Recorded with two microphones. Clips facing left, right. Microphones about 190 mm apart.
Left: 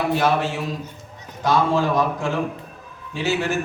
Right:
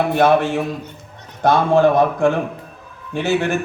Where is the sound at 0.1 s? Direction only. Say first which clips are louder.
Right 6 dB; 55° right (ahead or behind).